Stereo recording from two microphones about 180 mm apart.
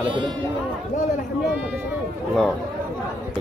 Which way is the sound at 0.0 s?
25° right (ahead or behind).